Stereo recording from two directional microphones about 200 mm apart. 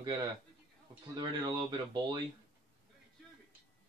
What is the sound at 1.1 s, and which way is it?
A man's voice, 20° right (ahead or behind).